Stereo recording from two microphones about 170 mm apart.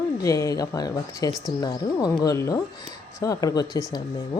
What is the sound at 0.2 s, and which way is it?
A woman's voice, 20° left (ahead or behind).